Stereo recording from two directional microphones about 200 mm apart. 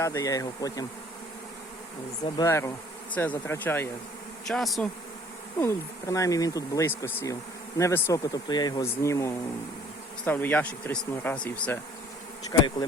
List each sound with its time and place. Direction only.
0.0 s speech: 15° left (ahead or behind)
2.2 s speech: 15° left (ahead or behind)
5.5 s speech: 15° left (ahead or behind)